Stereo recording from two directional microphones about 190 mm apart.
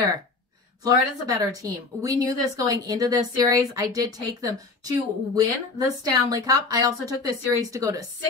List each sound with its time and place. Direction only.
0.8 s a woman's voice: 20° right (ahead or behind)